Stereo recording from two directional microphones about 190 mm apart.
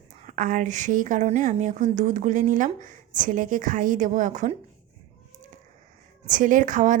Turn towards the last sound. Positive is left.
turn(degrees=-45)  # may be behind; listen again after turning